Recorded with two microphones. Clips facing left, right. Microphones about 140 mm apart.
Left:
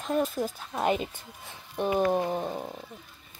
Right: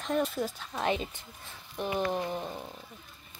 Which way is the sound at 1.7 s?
45° left (ahead or behind).